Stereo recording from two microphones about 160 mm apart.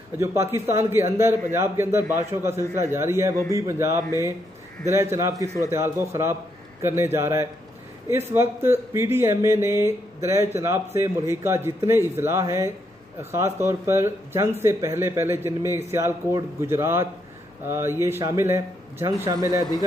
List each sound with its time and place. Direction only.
0.2 s speech: 15° right (ahead or behind)